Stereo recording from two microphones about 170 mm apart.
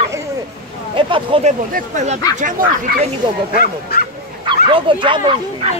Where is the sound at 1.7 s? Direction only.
45° right (ahead or behind).